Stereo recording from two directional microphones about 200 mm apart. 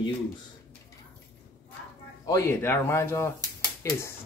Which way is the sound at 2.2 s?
15° left (ahead or behind).